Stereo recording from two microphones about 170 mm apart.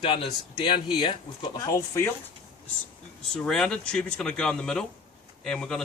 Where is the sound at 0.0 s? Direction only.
30° left (ahead or behind); by 2.1 s 15° left (ahead or behind).